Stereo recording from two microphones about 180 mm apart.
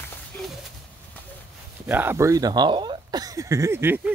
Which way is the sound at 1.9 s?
10° right (ahead or behind).